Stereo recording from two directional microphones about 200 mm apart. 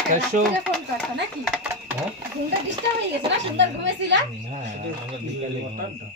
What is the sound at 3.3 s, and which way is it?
Speech, 60° right (ahead or behind).